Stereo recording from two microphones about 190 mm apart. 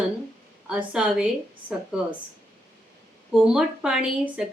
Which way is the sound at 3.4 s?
5° right (ahead or behind).